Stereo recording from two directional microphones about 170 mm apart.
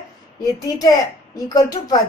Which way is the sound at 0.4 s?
20° left (ahead or behind).